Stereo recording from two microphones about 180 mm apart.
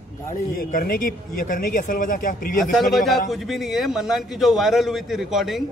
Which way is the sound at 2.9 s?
Centre (ahead or behind).